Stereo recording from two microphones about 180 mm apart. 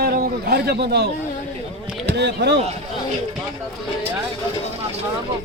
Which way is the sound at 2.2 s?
70° right (ahead or behind).